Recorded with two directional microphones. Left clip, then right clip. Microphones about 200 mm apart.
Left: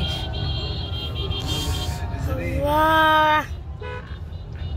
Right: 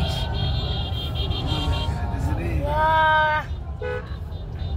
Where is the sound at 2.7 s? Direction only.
65° left (ahead or behind).